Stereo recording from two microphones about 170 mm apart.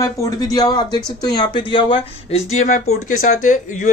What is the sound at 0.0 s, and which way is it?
Speech, 20° left (ahead or behind).